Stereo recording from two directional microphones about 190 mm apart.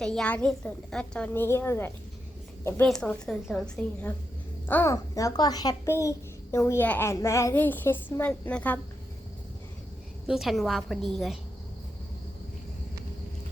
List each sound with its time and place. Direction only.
0.0 s a woman's voice: 5° left (ahead or behind)
10.2 s a woman's voice: centre (ahead or behind)